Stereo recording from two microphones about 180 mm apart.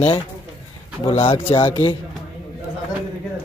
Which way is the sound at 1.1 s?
30° left (ahead or behind).